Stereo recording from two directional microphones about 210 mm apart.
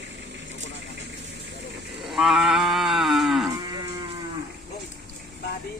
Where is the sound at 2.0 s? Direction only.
Centre (ahead or behind).